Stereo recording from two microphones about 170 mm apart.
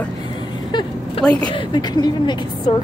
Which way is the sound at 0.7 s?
25° left (ahead or behind).